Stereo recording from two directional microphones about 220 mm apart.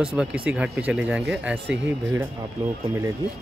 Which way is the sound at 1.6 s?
55° right (ahead or behind).